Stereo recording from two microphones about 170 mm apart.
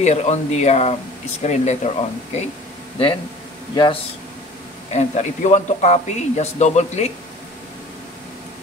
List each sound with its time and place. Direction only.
0.0 s speech: 40° left (ahead or behind)
3.7 s speech: 30° left (ahead or behind)
4.9 s speech: 45° left (ahead or behind)